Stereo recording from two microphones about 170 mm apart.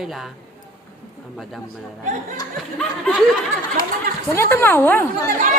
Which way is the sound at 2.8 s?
5° left (ahead or behind).